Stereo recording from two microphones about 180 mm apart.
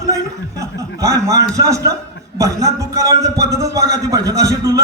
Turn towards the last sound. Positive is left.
turn(degrees=-20)  # may be behind; listen again after turning